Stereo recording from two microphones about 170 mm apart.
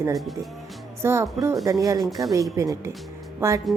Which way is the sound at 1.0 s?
15° right (ahead or behind).